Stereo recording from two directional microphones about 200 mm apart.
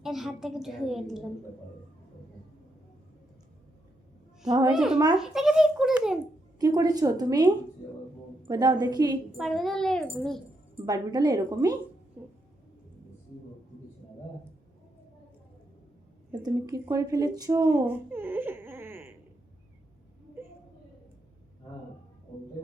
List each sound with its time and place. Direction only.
0.0 s a woman's voice: centre (ahead or behind)
4.4 s a woman's voice: 20° right (ahead or behind)
4.7 s a woman's voice: 5° right (ahead or behind)
6.6 s a woman's voice: 20° right (ahead or behind)
9.4 s a woman's voice: centre (ahead or behind)
10.8 s a woman's voice: 20° right (ahead or behind)
16.4 s speech: 20° right (ahead or behind)